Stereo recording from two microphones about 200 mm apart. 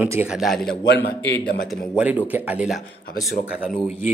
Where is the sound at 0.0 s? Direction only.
10° right (ahead or behind).